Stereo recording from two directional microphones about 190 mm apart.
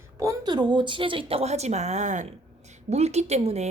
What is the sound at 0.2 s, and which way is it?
A woman's voice, 20° right (ahead or behind).